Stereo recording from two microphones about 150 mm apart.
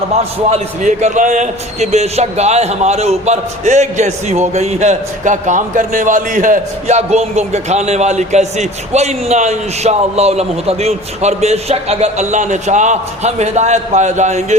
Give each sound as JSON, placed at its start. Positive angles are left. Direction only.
{"t": 0.5, "sound": "a man's voice", "side_deg": -50}